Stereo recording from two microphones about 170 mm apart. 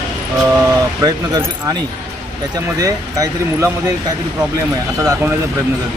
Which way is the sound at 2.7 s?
20° right (ahead or behind).